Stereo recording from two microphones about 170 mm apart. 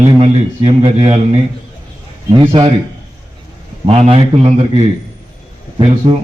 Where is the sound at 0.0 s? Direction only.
35° right (ahead or behind).